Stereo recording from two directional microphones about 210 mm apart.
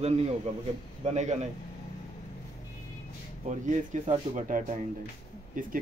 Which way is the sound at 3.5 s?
35° right (ahead or behind).